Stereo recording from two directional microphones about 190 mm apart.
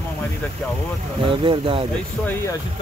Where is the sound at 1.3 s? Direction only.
25° right (ahead or behind).